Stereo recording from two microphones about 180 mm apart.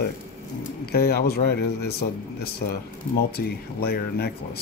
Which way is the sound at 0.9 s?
60° left (ahead or behind).